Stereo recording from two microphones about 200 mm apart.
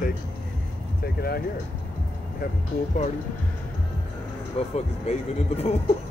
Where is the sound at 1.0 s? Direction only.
50° left (ahead or behind).